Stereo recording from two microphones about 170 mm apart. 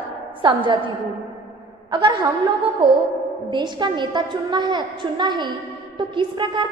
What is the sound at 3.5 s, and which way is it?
A woman's voice, 25° right (ahead or behind).